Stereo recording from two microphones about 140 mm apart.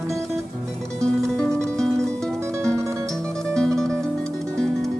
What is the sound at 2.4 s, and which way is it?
Music, 20° right (ahead or behind).